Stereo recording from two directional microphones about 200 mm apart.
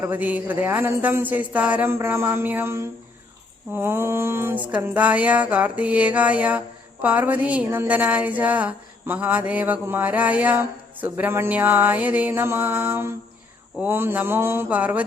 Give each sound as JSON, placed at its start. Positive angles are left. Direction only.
{"t": 0.0, "sound": "a woman's voice", "side_deg": -10}